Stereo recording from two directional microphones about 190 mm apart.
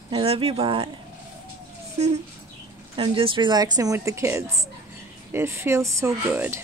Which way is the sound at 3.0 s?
25° right (ahead or behind).